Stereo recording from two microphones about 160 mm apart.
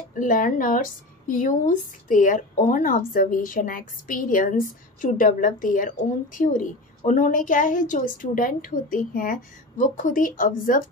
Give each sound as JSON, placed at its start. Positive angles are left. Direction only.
{"t": 0.1, "sound": "a woman's voice", "side_deg": 55}